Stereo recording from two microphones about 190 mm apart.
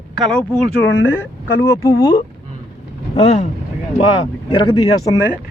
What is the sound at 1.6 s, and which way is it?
Speech, 15° left (ahead or behind).